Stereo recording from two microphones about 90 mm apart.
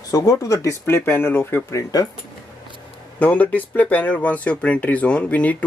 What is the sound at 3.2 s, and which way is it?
Speech, 15° left (ahead or behind).